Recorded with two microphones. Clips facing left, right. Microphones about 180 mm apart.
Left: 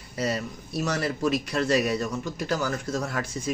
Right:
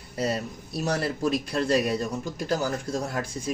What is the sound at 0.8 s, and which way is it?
Speech, 35° right (ahead or behind).